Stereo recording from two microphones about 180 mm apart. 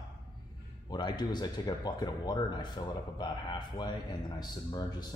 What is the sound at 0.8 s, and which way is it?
A man's voice, 25° left (ahead or behind).